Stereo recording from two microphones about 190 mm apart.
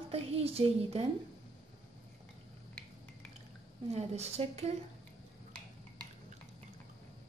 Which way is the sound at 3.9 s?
35° right (ahead or behind).